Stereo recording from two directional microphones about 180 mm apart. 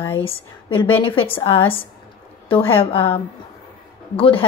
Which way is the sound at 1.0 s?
30° left (ahead or behind).